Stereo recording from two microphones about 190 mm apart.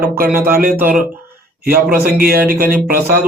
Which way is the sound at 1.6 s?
50° right (ahead or behind).